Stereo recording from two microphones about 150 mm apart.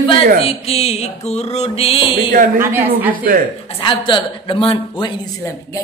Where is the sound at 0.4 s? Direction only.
40° left (ahead or behind).